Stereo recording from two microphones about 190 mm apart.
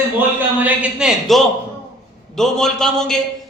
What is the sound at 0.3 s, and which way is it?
A man's voice, 5° right (ahead or behind).